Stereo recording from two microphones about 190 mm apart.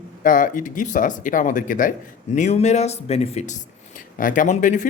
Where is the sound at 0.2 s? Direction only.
45° left (ahead or behind).